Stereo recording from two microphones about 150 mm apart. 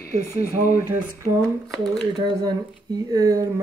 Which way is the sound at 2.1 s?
30° right (ahead or behind).